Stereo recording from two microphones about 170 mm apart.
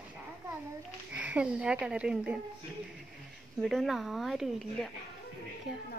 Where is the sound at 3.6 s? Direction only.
Centre (ahead or behind).